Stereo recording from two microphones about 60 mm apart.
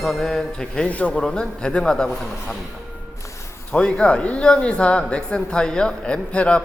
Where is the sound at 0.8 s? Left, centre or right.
Left.